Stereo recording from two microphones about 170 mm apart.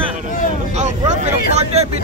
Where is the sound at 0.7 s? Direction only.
40° right (ahead or behind).